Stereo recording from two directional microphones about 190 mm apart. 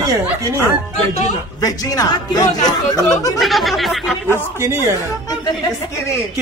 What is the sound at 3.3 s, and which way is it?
Speech, centre (ahead or behind).